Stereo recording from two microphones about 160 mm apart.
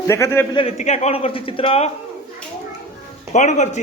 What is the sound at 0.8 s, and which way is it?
Speech, 45° left (ahead or behind).